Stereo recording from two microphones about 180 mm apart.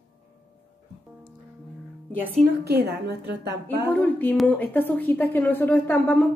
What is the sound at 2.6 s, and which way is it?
Speech, 65° right (ahead or behind).